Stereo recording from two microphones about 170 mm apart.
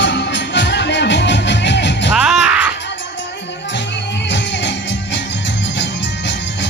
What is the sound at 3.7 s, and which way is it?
Music, 90° left.